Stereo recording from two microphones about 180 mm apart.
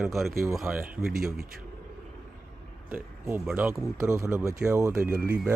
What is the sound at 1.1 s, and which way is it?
Speech, 55° right (ahead or behind).